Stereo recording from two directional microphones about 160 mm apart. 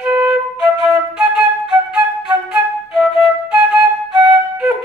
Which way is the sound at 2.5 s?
5° right (ahead or behind).